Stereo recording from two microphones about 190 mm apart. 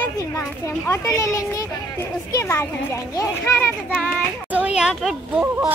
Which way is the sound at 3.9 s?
5° right (ahead or behind).